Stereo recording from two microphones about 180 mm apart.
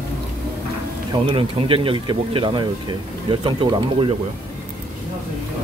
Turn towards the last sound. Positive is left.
turn(degrees=-25)  # may be behind; listen again after turning